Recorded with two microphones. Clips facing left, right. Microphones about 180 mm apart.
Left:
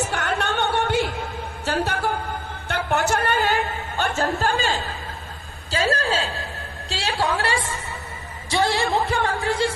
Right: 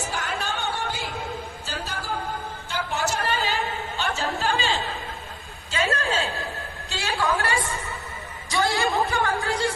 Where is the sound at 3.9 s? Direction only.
45° left (ahead or behind).